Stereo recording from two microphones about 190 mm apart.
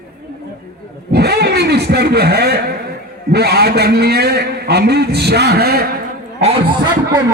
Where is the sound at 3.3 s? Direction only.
55° right (ahead or behind).